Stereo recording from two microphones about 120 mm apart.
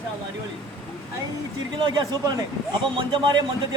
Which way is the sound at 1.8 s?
40° right (ahead or behind).